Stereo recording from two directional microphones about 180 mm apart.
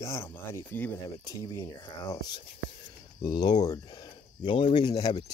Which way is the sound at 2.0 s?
30° left (ahead or behind).